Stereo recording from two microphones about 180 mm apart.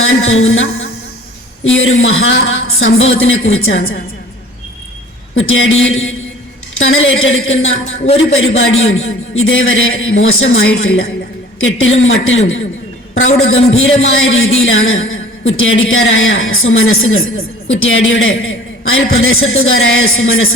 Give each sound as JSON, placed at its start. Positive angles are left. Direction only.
{"t": 0.0, "sound": "a man's voice", "side_deg": 90}
{"t": 5.5, "sound": "a man's voice", "side_deg": 90}
{"t": 8.0, "sound": "a man's voice", "side_deg": 35}
{"t": 8.5, "sound": "a man's voice", "side_deg": 90}
{"t": 13.7, "sound": "a man's voice", "side_deg": 90}